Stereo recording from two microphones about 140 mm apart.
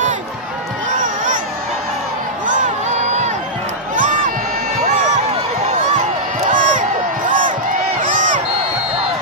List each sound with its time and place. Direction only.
1.0 s crowd: 70° right (ahead or behind)
2.4 s music: 65° right (ahead or behind)
3.9 s crowd: 70° right (ahead or behind)
6.4 s crowd: 65° right (ahead or behind)